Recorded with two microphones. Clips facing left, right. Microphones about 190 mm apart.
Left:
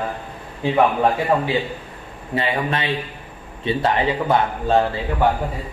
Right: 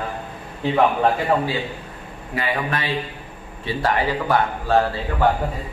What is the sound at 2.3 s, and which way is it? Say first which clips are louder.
A man's voice: left 2 dB; 25° left (ahead or behind).